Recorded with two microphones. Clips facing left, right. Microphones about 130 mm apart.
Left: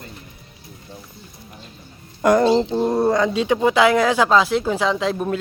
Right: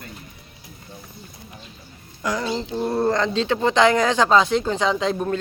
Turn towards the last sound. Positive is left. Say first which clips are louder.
# left 1 dB
turn(degrees=5)  # may be behind; listen again after turning